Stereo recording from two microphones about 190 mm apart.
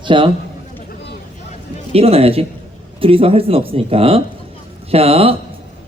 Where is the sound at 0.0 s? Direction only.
25° right (ahead or behind).